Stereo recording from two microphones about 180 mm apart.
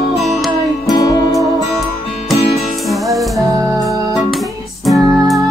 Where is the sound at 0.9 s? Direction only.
20° left (ahead or behind).